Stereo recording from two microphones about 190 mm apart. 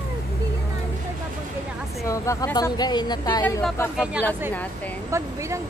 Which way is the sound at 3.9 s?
5° right (ahead or behind).